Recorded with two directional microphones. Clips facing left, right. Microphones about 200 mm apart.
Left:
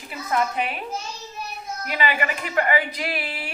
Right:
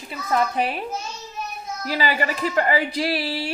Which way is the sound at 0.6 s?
35° right (ahead or behind).